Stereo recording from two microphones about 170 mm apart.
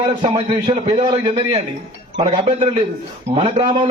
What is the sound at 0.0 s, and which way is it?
A man's voice, 30° right (ahead or behind).